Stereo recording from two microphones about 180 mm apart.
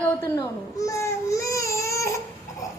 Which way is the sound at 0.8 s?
15° left (ahead or behind).